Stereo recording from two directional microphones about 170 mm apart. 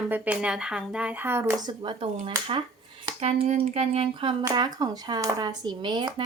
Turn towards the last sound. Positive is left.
turn(degrees=-25)  # may be behind; listen again after turning